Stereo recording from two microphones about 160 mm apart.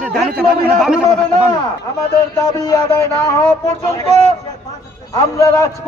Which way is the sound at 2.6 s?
20° left (ahead or behind).